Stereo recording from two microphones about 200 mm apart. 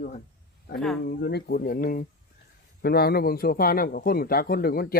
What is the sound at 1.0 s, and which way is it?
A man's voice, 50° left (ahead or behind).